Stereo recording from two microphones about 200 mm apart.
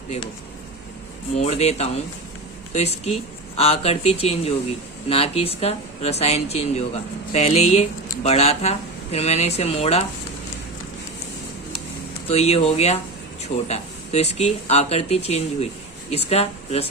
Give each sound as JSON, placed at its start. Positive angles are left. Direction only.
{"t": 1.4, "sound": "speech", "side_deg": 35}
{"t": 12.3, "sound": "speech", "side_deg": 30}